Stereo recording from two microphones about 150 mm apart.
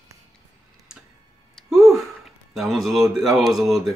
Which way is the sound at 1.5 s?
Centre (ahead or behind).